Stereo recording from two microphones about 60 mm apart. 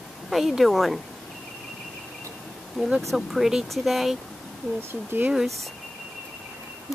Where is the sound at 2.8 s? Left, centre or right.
Centre.